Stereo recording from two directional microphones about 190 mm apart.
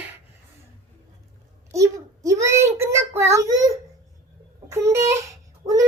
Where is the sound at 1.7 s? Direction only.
15° right (ahead or behind).